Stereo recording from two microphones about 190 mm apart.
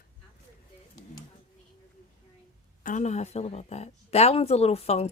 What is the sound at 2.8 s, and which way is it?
Speech, 40° left (ahead or behind).